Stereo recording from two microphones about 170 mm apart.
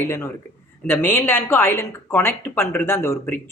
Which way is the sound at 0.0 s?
15° left (ahead or behind).